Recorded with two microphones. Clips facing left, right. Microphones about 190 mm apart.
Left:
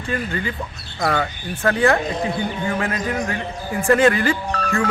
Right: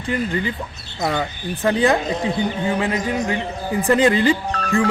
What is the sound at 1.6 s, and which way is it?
A man's voice, 15° right (ahead or behind).